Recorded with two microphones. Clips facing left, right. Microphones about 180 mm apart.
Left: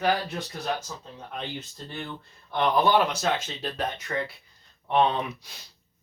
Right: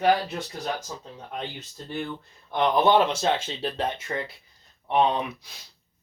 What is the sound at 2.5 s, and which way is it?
Speech, 20° right (ahead or behind).